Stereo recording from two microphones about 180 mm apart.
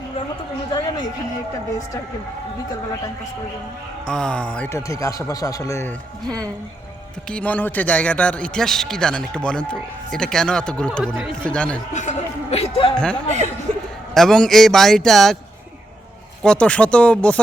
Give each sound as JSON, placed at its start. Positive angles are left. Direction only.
{"t": 4.0, "sound": "a man's voice", "side_deg": 5}
{"t": 6.2, "sound": "speech", "side_deg": -20}
{"t": 7.3, "sound": "speech", "side_deg": 5}
{"t": 11.9, "sound": "speech", "side_deg": 40}
{"t": 13.0, "sound": "speech", "side_deg": 5}
{"t": 16.4, "sound": "a man's voice", "side_deg": 5}